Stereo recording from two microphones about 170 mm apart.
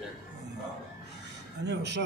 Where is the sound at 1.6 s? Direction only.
90° right.